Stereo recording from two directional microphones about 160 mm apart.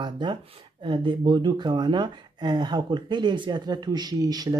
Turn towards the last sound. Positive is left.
turn(degrees=-25)  # may be behind; listen again after turning